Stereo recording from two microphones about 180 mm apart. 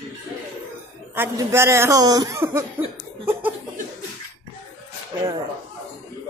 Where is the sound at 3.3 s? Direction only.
10° right (ahead or behind).